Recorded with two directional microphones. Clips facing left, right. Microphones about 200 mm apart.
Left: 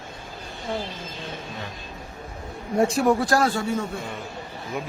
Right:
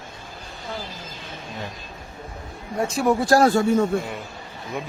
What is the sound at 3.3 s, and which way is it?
Speech, 40° right (ahead or behind).